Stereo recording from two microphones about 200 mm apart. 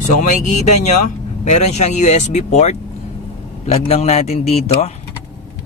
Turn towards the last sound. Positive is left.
turn(degrees=30)  # may be behind; listen again after turning